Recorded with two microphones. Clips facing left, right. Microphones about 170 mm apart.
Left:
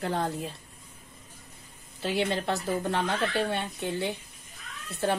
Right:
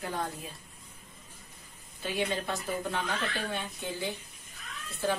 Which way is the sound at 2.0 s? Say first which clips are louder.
Left 4 dB; 70° left (ahead or behind).